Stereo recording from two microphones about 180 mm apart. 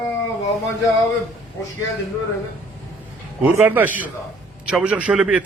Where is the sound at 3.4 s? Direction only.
10° right (ahead or behind).